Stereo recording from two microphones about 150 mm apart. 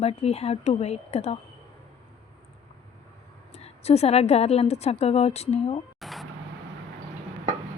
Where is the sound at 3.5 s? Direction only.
45° left (ahead or behind).